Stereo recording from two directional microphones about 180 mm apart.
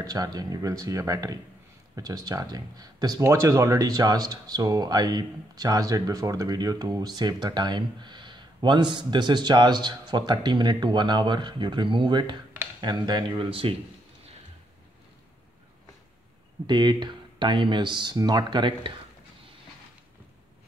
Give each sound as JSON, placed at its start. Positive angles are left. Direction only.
{"t": 0.0, "sound": "speech", "side_deg": -20}
{"t": 16.6, "sound": "speech", "side_deg": -25}